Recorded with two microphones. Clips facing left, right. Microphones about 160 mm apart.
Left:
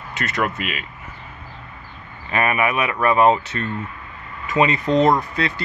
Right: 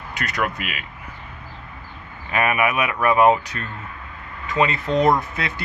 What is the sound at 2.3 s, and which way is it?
Speech, 5° right (ahead or behind).